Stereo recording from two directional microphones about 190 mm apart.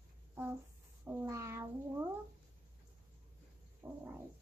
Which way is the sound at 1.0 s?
15° right (ahead or behind).